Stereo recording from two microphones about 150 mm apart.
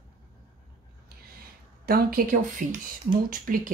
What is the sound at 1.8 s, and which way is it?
Speech, 80° right.